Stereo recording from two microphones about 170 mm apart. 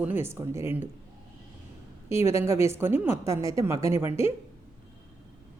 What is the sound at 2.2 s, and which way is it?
A woman's voice, 15° right (ahead or behind).